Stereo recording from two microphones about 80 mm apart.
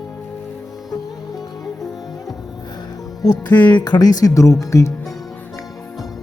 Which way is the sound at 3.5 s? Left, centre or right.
Centre.